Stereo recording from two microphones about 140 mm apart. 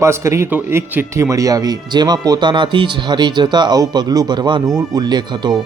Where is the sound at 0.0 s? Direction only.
20° right (ahead or behind).